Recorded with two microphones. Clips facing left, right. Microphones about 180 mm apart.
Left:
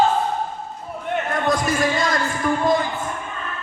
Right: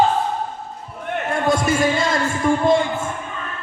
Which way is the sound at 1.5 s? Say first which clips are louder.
Right 3 dB; 25° right (ahead or behind).